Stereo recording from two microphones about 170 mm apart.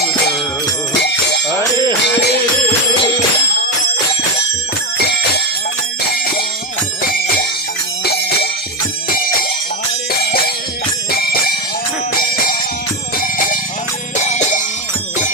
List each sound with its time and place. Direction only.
2.1 s music: 70° left (ahead or behind)
10.1 s music: 60° left (ahead or behind)
14.2 s music: 45° left (ahead or behind)